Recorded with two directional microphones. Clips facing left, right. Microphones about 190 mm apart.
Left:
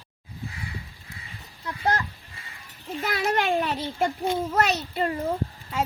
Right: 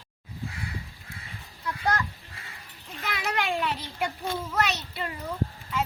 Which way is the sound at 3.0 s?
40° left (ahead or behind).